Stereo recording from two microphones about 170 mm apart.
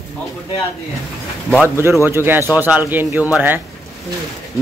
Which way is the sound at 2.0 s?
10° right (ahead or behind).